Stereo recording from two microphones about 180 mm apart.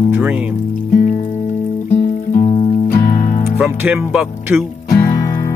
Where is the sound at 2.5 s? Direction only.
30° left (ahead or behind).